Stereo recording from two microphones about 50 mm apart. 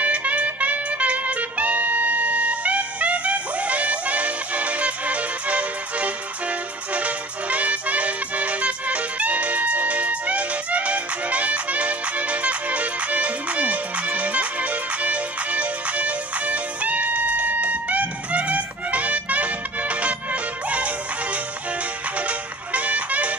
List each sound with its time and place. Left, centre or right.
0.0 s music: right
22.7 s music: right